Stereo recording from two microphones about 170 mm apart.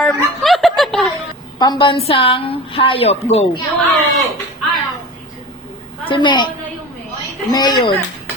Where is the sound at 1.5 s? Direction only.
25° left (ahead or behind).